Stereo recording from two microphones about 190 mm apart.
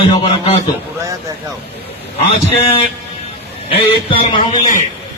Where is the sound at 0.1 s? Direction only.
30° left (ahead or behind).